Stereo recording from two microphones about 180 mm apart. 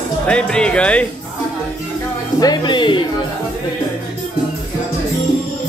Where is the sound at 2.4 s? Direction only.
25° left (ahead or behind).